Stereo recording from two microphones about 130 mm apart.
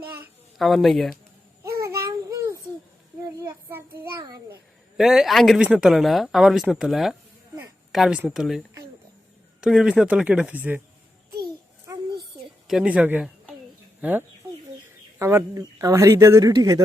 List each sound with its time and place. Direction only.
0.6 s speech: centre (ahead or behind)
1.8 s child singing: 25° right (ahead or behind)
4.2 s a sound: 30° right (ahead or behind)
4.9 s speech: 5° right (ahead or behind)
12.6 s speech: 5° right (ahead or behind); by 16.8 s 30° right (ahead or behind)